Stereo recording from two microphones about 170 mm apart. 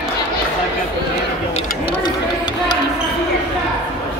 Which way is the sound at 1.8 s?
25° left (ahead or behind).